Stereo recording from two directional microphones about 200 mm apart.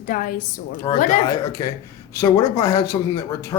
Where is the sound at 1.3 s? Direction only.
15° left (ahead or behind).